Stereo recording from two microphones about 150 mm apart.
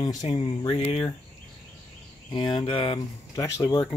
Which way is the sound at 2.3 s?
30° left (ahead or behind).